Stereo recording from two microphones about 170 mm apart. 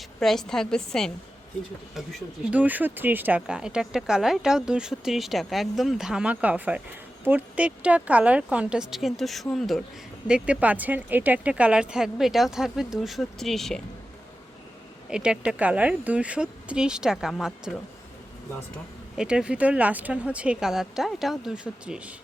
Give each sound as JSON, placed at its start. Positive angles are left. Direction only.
{"t": 0.2, "sound": "a woman's voice", "side_deg": 0}
{"t": 15.1, "sound": "speech", "side_deg": -5}
{"t": 19.1, "sound": "speech", "side_deg": -5}